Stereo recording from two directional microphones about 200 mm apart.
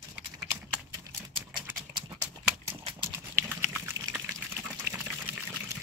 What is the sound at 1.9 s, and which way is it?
Clip-clop, 20° right (ahead or behind).